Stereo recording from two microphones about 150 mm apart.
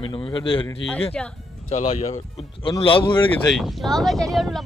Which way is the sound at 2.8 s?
35° left (ahead or behind).